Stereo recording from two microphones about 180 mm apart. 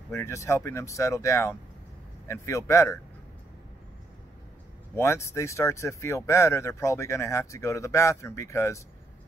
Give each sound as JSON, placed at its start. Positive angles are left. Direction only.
{"t": 0.1, "sound": "speech", "side_deg": 15}
{"t": 4.9, "sound": "speech", "side_deg": 15}